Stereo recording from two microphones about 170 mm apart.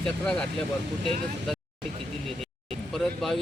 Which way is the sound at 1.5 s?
Centre (ahead or behind).